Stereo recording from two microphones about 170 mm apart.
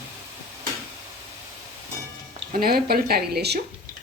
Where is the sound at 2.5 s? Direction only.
60° right (ahead or behind).